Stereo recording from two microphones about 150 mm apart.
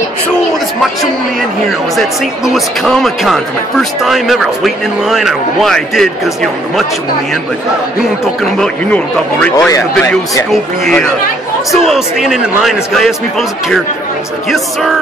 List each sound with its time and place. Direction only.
2.0 s a man's voice: centre (ahead or behind)
8.5 s speech: 10° left (ahead or behind)
9.7 s a man's voice: 20° left (ahead or behind)
10.5 s a man's voice: centre (ahead or behind)